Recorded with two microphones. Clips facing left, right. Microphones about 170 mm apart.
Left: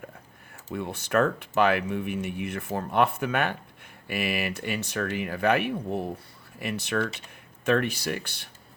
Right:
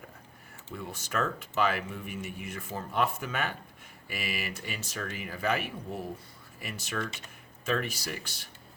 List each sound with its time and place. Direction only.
0.7 s speech: 65° left (ahead or behind)